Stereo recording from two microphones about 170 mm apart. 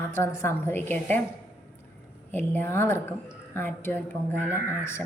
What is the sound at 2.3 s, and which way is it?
A woman's voice, 15° left (ahead or behind).